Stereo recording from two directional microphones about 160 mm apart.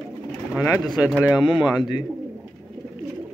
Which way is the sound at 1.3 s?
30° left (ahead or behind).